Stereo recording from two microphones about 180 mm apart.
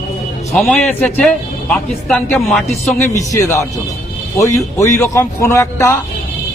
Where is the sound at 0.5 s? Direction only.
5° left (ahead or behind).